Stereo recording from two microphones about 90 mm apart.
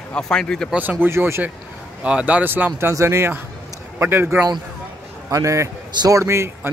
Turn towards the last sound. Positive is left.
turn(degrees=-30)  # may be behind; listen again after turning